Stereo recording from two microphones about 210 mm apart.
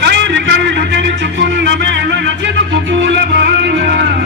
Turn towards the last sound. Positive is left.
turn(degrees=-50)  # may be behind; listen again after turning